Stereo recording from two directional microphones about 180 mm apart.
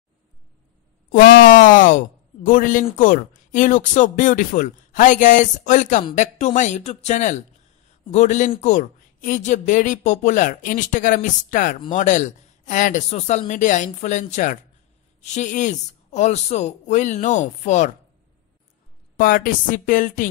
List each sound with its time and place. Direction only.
1.1 s speech: 50° left (ahead or behind)
19.1 s speech: 50° left (ahead or behind)